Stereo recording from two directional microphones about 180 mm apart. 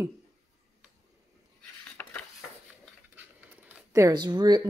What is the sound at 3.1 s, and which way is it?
Zipper, 10° right (ahead or behind).